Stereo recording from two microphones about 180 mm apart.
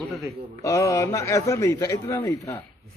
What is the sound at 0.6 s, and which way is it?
A man's voice, 15° left (ahead or behind).